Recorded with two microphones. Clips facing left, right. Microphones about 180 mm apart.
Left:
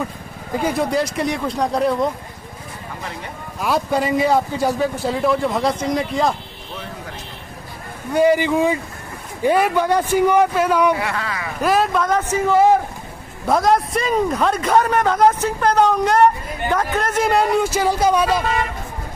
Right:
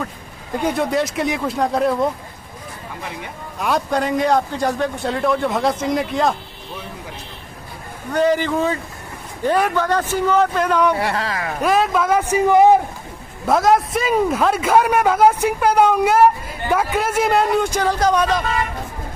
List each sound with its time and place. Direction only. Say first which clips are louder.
0.6 s a man's voice: even; centre (ahead or behind)
3.5 s a man's voice: even; centre (ahead or behind)
8.1 s a man's voice: left 2 dB; 10° left (ahead or behind)
11.0 s speech: right 3 dB; 35° right (ahead or behind)
11.6 s speech: even; centre (ahead or behind); by 12.7 s 15° right (ahead or behind)
13.5 s a man's voice: right 1 dB; centre (ahead or behind)